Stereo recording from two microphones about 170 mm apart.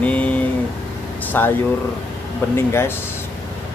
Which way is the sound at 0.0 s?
10° left (ahead or behind).